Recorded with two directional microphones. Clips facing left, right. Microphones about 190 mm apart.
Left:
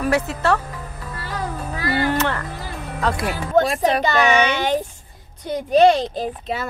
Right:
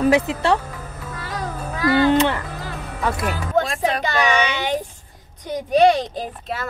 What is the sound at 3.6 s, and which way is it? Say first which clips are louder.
Speech: left 3 dB; 5° left (ahead or behind).